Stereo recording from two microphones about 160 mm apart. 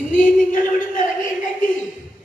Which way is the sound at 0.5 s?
55° left (ahead or behind).